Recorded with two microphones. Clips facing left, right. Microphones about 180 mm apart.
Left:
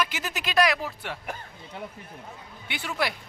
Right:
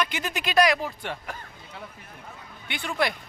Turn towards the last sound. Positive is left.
turn(degrees=5)  # may be behind; listen again after turning